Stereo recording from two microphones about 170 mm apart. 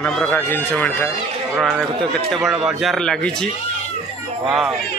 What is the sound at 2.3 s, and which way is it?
A man's voice, centre (ahead or behind).